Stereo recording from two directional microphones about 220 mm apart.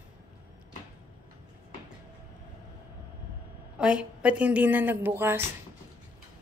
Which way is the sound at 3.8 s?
5° right (ahead or behind).